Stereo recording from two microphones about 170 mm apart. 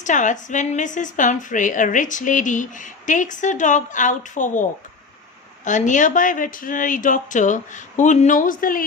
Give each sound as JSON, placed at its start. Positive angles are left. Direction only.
{"t": 0.0, "sound": "a woman's voice", "side_deg": 45}
{"t": 5.6, "sound": "a woman's voice", "side_deg": 45}